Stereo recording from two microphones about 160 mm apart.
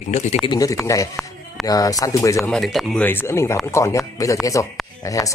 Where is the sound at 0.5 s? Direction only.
20° left (ahead or behind).